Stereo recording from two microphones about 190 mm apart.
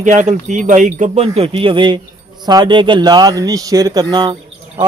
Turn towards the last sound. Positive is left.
turn(degrees=-20)  # may be behind; listen again after turning